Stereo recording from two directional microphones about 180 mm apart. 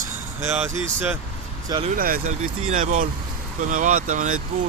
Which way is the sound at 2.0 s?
50° right (ahead or behind).